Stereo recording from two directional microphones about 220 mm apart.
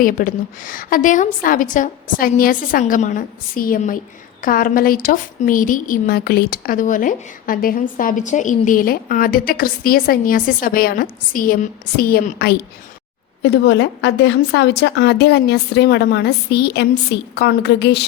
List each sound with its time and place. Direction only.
0.0 s a woman's voice: 40° left (ahead or behind)